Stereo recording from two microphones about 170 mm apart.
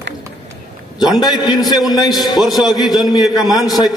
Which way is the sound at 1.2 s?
25° left (ahead or behind).